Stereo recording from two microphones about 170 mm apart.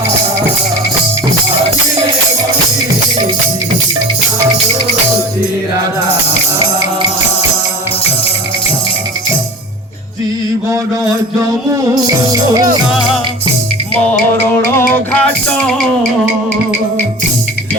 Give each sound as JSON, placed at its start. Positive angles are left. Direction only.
{"t": 14.1, "sound": "music", "side_deg": 15}